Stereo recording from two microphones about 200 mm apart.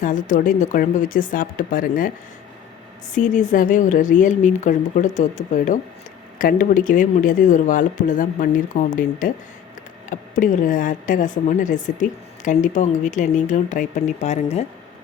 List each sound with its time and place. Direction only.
0.0 s speech: 40° left (ahead or behind)